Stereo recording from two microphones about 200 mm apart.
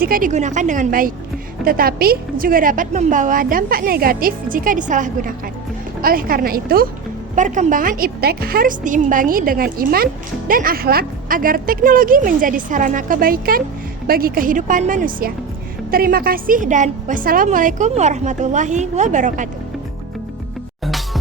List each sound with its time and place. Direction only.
0.0 s a woman's voice: 45° right (ahead or behind)